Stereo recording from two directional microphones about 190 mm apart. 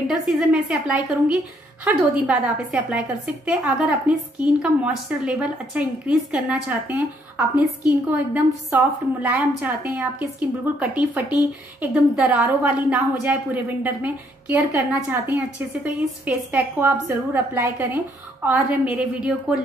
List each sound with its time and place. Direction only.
0.1 s a woman's voice: 5° right (ahead or behind)